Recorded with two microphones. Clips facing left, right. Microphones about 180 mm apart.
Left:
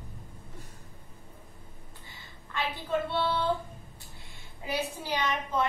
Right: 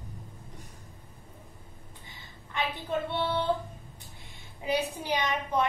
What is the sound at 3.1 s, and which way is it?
Female singing, 20° right (ahead or behind).